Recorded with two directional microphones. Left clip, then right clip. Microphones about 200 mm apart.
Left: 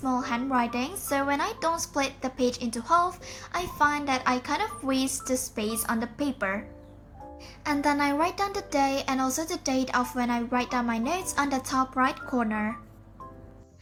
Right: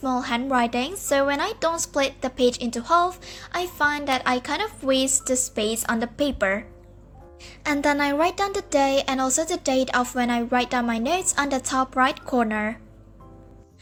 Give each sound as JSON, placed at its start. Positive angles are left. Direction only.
{"t": 0.0, "sound": "a woman's voice", "side_deg": -30}
{"t": 7.6, "sound": "a woman's voice", "side_deg": -30}